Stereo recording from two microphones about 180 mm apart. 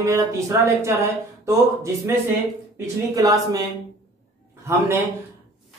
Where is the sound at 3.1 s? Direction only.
20° right (ahead or behind).